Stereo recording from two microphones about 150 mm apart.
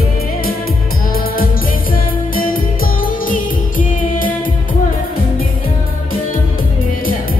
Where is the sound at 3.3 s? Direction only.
65° left (ahead or behind).